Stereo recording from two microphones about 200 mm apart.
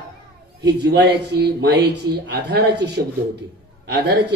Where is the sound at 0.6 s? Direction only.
55° right (ahead or behind).